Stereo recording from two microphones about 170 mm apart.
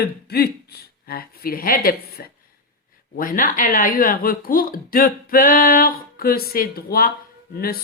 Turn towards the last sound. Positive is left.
turn(degrees=60)  # may be behind; listen again after turning